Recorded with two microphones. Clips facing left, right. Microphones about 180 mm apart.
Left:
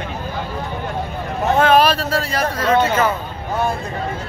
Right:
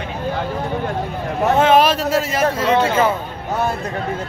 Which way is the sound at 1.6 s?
20° right (ahead or behind).